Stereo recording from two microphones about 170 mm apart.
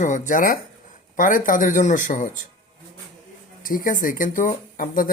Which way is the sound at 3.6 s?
55° left (ahead or behind).